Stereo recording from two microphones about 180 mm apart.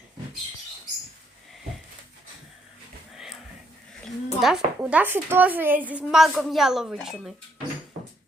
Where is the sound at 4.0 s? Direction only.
Centre (ahead or behind).